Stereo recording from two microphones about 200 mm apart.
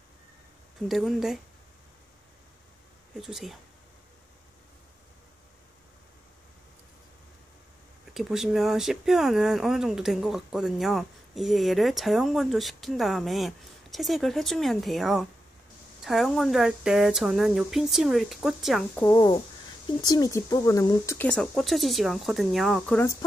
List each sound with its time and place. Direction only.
0.8 s speech: centre (ahead or behind)
3.2 s speech: centre (ahead or behind)
8.1 s speech: centre (ahead or behind)
19.0 s speech: 20° left (ahead or behind)